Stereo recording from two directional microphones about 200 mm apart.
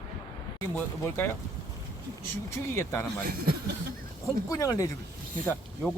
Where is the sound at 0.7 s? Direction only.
10° left (ahead or behind).